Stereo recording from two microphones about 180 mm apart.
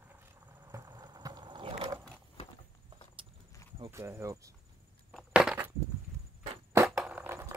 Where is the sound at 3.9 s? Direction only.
15° right (ahead or behind).